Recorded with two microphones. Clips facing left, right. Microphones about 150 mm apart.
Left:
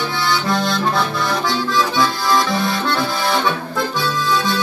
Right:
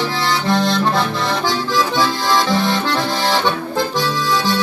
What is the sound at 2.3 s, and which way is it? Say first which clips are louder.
Accordion: right 4 dB; 20° right (ahead or behind).